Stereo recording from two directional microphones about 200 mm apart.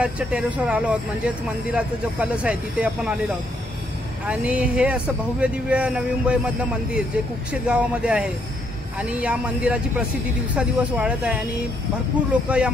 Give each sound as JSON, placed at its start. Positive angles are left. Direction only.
{"t": 0.0, "sound": "speech", "side_deg": -5}
{"t": 4.3, "sound": "speech", "side_deg": -5}
{"t": 12.4, "sound": "speech", "side_deg": -5}